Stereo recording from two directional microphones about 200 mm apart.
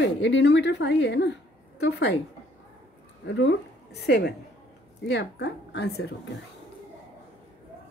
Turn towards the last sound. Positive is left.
turn(degrees=55)  # may be behind; listen again after turning